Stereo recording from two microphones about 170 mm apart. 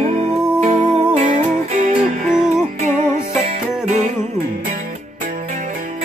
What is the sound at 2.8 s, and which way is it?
Music, 40° right (ahead or behind).